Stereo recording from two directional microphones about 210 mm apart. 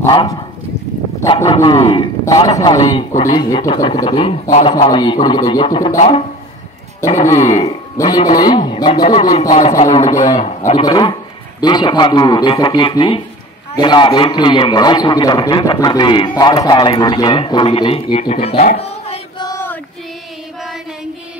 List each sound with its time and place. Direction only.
0.0 s speech: 20° left (ahead or behind)
1.4 s a man's voice: 20° left (ahead or behind)
3.1 s speech: 35° left (ahead or behind)
3.3 s a man's voice: 20° left (ahead or behind)
5.9 s speech: 30° left (ahead or behind)
8.0 s a man's voice: 15° left (ahead or behind)
9.5 s speech: 35° left (ahead or behind)
10.8 s a man's voice: 20° left (ahead or behind)
18.2 s a sound: 30° left (ahead or behind); by 19.8 s 10° left (ahead or behind)
20.6 s music: centre (ahead or behind)